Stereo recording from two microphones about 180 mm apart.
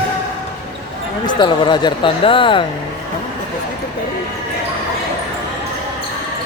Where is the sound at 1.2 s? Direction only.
25° left (ahead or behind).